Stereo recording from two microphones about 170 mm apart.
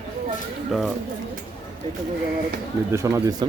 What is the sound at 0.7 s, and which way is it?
Speech, centre (ahead or behind).